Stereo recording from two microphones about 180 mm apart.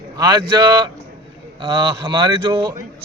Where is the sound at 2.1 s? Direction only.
25° right (ahead or behind).